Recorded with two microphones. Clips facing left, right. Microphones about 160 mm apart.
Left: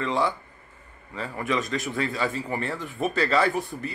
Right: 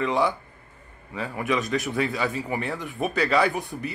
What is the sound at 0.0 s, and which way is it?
Speech, 15° right (ahead or behind).